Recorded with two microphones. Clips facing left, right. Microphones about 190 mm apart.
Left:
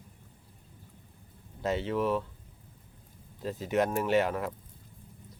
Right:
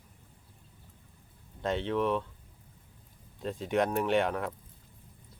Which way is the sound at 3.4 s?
5° left (ahead or behind).